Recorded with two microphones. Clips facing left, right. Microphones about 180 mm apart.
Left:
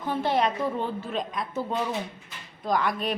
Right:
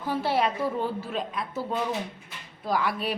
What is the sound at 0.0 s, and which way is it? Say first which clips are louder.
Speech: left 1 dB; 5° right (ahead or behind).